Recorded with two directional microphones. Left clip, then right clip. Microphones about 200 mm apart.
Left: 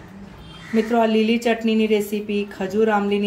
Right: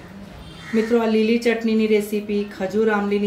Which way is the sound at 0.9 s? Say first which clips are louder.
Even; 40° left (ahead or behind).